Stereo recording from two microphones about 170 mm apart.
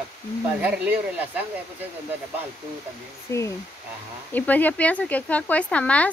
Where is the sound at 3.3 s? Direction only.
15° left (ahead or behind).